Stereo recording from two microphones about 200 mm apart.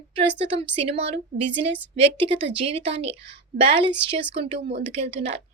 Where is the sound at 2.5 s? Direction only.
30° right (ahead or behind).